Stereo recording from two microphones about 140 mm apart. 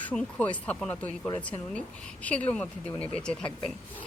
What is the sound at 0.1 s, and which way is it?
Speech, 10° left (ahead or behind).